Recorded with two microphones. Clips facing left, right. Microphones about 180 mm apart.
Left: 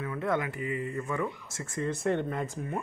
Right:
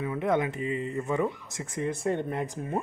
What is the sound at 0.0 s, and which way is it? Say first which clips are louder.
Speech: right 4 dB; 20° right (ahead or behind).